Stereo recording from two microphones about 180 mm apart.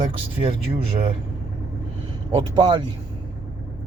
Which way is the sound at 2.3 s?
25° right (ahead or behind).